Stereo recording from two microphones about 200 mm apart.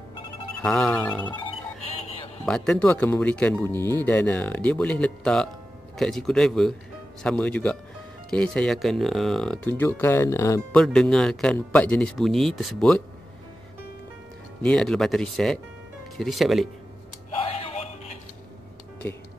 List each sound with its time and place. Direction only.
0.6 s speech: 5° left (ahead or behind)
2.4 s speech: 5° left (ahead or behind)
10.7 s speech: 5° left (ahead or behind)
14.6 s speech: centre (ahead or behind)
17.4 s music: 30° left (ahead or behind)